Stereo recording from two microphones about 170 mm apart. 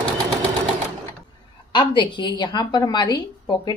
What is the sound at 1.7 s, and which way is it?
A woman's voice, 30° left (ahead or behind).